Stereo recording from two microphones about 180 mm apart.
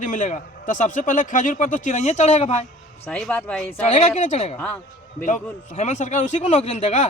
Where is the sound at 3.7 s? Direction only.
40° left (ahead or behind).